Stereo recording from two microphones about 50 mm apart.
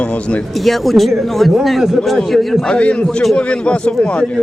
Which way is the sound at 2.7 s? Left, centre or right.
Centre.